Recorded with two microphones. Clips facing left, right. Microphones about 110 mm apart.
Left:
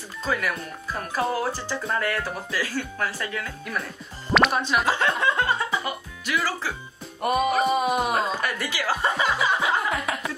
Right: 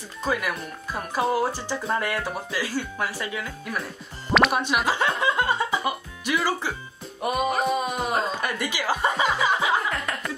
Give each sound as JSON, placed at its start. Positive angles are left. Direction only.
{"t": 0.2, "sound": "speech", "side_deg": -15}
{"t": 4.5, "sound": "speech", "side_deg": -15}
{"t": 7.2, "sound": "music", "side_deg": 0}
{"t": 8.4, "sound": "speech", "side_deg": -15}
{"t": 9.2, "sound": "chuckle", "side_deg": -15}
{"t": 9.8, "sound": "a sound", "side_deg": 5}